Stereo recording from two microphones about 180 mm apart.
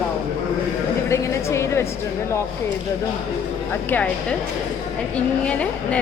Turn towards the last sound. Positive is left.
turn(degrees=5)  # may be behind; listen again after turning